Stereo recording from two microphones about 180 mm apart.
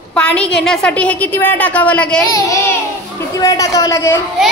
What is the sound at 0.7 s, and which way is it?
A woman's voice, 5° left (ahead or behind).